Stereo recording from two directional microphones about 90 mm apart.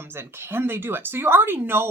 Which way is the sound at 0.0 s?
25° right (ahead or behind).